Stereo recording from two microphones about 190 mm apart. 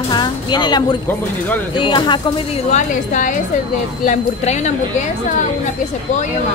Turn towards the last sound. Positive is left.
turn(degrees=40)  # may be behind; listen again after turning